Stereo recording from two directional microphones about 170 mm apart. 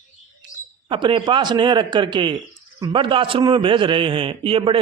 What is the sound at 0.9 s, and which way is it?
A man's voice, 30° right (ahead or behind).